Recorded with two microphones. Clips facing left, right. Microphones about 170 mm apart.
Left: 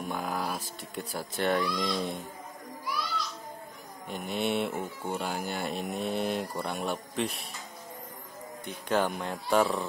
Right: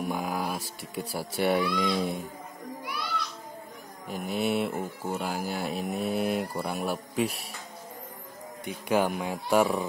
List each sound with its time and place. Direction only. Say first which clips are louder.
0.0 s speech: right 2 dB; 5° right (ahead or behind)
2.8 s children playing: left 1 dB; 60° right (ahead or behind)
4.1 s speech: right 2 dB; centre (ahead or behind)
8.6 s speech: right 2 dB; 10° right (ahead or behind)